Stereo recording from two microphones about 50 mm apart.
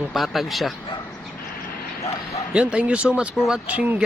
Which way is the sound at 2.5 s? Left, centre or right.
Right.